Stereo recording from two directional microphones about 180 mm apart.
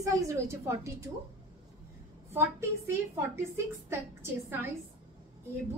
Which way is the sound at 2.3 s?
15° right (ahead or behind).